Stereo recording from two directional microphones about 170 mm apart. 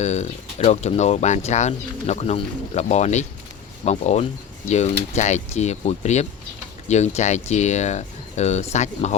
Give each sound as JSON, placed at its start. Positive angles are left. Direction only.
{"t": 0.0, "sound": "speech", "side_deg": 40}